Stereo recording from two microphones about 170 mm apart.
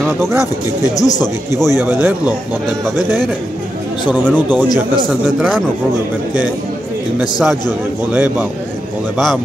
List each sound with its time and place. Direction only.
0.9 s a man's voice: 20° left (ahead or behind)
1.8 s speech: 10° right (ahead or behind)
4.1 s speech: 10° right (ahead or behind)
7.2 s a man's voice: 5° right (ahead or behind)